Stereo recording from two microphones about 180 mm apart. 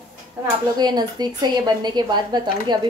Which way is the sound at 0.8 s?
20° right (ahead or behind).